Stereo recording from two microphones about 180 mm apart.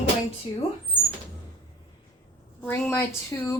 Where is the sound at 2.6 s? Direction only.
10° left (ahead or behind).